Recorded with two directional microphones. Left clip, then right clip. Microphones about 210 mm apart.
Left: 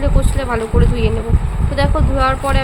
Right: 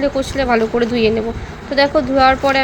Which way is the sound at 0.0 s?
15° right (ahead or behind).